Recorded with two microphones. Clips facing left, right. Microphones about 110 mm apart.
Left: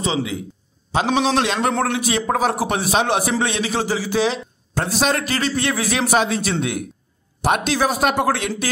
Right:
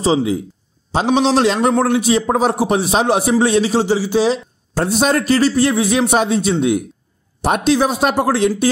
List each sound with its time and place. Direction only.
0.0 s a man's voice: 35° right (ahead or behind)